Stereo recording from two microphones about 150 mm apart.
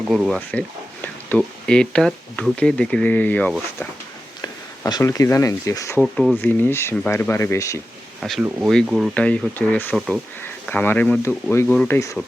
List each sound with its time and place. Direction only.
0.1 s speech: centre (ahead or behind)
4.4 s speech: 25° left (ahead or behind)
6.0 s speech: centre (ahead or behind); by 7.8 s 20° left (ahead or behind)
8.2 s speech: centre (ahead or behind)
9.1 s speech: 10° left (ahead or behind)